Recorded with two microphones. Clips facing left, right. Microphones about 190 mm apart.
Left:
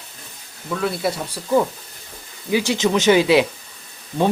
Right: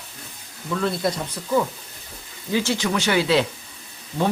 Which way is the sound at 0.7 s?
5° left (ahead or behind).